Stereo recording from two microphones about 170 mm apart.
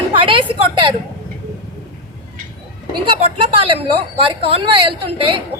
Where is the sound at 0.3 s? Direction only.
30° right (ahead or behind).